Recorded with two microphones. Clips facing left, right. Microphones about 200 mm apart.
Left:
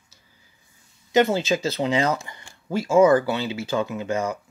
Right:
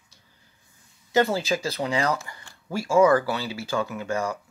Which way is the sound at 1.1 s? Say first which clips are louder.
Left 3 dB; 20° left (ahead or behind).